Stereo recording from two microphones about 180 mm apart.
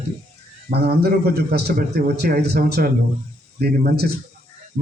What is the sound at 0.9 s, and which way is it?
A man's voice, 60° right (ahead or behind).